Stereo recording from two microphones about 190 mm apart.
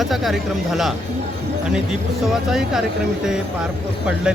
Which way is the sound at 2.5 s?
Centre (ahead or behind).